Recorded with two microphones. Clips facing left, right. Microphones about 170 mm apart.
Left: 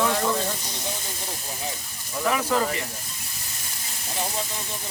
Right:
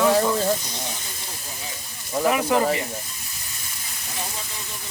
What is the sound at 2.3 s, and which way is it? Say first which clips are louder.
Speech: right 1 dB; 15° right (ahead or behind).